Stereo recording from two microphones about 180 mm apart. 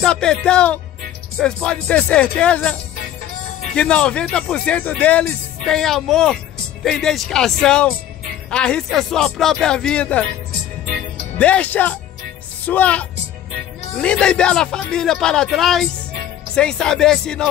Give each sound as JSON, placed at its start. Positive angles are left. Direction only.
{"t": 0.0, "sound": "speech", "side_deg": 5}
{"t": 11.3, "sound": "speech", "side_deg": 5}